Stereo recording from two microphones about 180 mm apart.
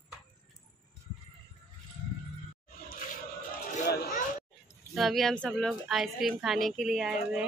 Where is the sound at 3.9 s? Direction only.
55° left (ahead or behind).